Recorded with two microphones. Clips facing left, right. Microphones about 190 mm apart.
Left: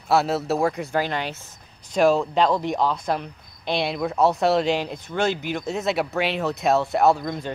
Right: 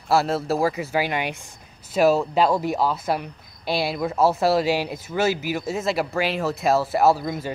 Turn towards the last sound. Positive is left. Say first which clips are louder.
# even
turn(degrees=-5)  # may be behind; listen again after turning